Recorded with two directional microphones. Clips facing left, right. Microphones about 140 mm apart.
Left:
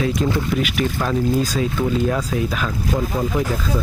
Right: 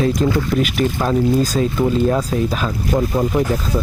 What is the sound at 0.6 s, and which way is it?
Speech, 35° right (ahead or behind).